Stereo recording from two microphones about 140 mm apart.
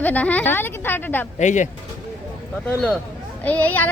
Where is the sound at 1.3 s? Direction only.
60° left (ahead or behind).